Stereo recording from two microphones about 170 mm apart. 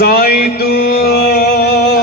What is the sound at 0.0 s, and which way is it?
Music, 65° left (ahead or behind).